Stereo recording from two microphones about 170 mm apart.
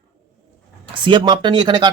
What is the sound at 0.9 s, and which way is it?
Speech, 30° right (ahead or behind).